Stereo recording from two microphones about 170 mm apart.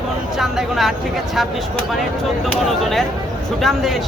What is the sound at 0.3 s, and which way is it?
Speech, centre (ahead or behind).